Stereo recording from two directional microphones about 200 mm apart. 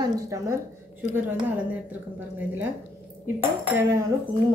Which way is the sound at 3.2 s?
10° right (ahead or behind).